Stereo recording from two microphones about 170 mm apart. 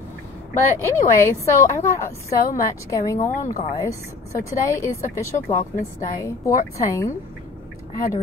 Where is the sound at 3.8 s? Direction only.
15° left (ahead or behind).